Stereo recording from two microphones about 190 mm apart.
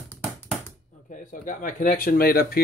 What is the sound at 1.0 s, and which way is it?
Speech, 45° left (ahead or behind).